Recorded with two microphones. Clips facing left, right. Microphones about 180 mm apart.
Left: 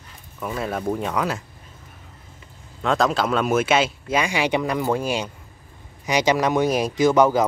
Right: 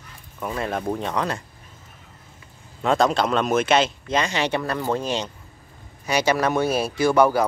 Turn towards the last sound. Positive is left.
turn(degrees=20)  # may be behind; listen again after turning